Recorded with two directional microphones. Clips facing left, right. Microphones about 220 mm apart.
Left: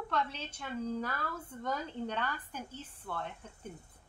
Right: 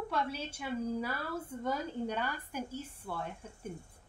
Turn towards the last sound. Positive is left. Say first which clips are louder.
# right 1 dB
turn(degrees=-10)  # may be behind; listen again after turning